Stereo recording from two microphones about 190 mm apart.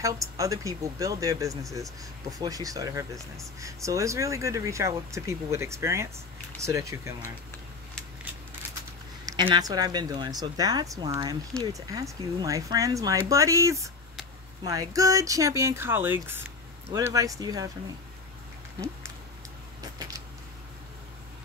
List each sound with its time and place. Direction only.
0.0 s speech: 15° right (ahead or behind)
9.2 s speech: 25° right (ahead or behind)
19.8 s a sound: 20° right (ahead or behind)